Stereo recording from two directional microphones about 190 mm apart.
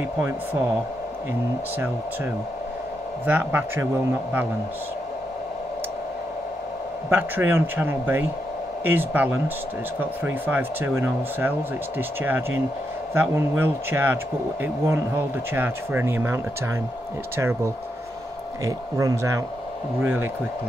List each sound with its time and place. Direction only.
3.3 s speech: 10° right (ahead or behind)
7.1 s speech: 10° right (ahead or behind)
17.4 s speech: 15° right (ahead or behind)